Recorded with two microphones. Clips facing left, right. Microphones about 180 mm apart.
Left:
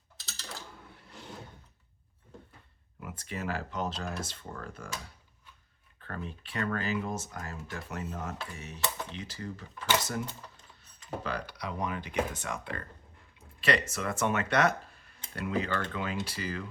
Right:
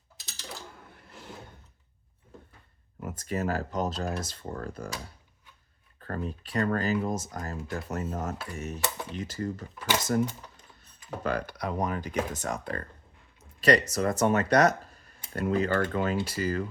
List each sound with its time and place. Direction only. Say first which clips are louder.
0.3 s a sound: right 2 dB; 15° right (ahead or behind)
3.0 s speech: right 7 dB; 40° right (ahead or behind)
6.0 s speech: right 6 dB; 40° right (ahead or behind)
11.2 s speech: right 8 dB; 50° right (ahead or behind)